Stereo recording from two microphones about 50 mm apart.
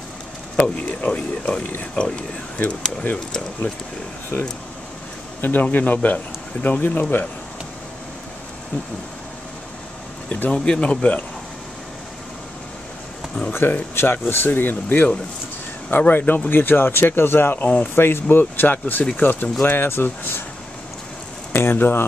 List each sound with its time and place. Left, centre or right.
0.7 s speech: left
2.6 s speech: left
3.3 s speech: centre
4.3 s speech: left
5.4 s speech: left
10.3 s speech: left
13.5 s speech: left
16.1 s speech: left
17.9 s speech: left
18.3 s speech: left
19.6 s speech: left
21.5 s speech: left